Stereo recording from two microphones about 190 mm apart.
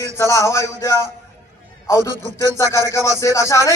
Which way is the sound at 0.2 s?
15° left (ahead or behind).